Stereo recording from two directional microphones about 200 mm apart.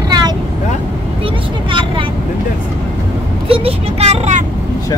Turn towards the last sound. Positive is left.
turn(degrees=-35)  # may be behind; listen again after turning